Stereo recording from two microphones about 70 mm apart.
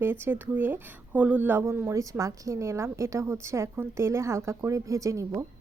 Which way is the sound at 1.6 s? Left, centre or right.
Right.